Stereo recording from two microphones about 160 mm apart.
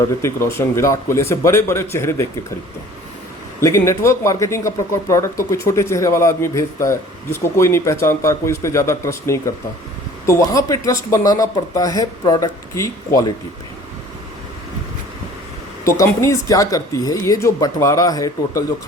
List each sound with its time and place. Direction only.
0.2 s speech: 15° left (ahead or behind)
3.6 s speech: 20° left (ahead or behind)
15.8 s speech: 20° left (ahead or behind)